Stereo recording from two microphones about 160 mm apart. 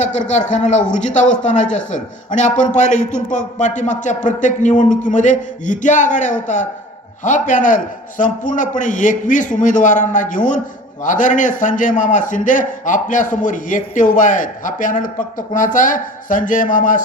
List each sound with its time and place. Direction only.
0.3 s a man's voice: 50° left (ahead or behind)